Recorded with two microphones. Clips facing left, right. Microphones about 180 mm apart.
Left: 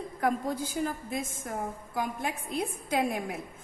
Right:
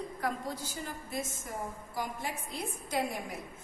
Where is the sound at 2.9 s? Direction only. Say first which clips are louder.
Left 4 dB; 55° left (ahead or behind).